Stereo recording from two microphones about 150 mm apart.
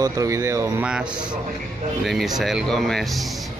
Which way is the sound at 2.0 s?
Centre (ahead or behind).